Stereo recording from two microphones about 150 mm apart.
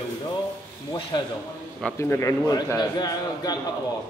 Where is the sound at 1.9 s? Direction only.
20° left (ahead or behind).